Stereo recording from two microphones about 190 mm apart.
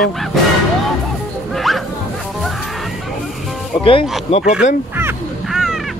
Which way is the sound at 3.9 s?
30° left (ahead or behind).